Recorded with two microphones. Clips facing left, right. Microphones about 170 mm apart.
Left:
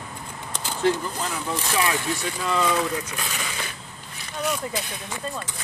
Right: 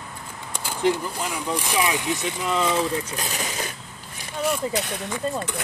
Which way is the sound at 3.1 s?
40° right (ahead or behind).